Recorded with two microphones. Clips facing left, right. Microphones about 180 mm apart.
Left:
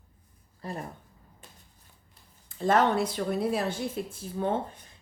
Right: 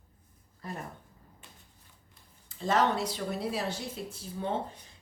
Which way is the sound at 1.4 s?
40° left (ahead or behind).